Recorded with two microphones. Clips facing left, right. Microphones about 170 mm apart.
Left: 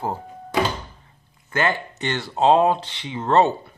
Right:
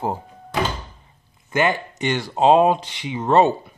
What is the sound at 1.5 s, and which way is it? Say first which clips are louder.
Speech: right 3 dB; 15° right (ahead or behind).